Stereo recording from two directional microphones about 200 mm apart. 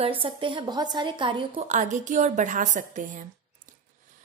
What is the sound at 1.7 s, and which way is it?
A woman's voice, 35° right (ahead or behind).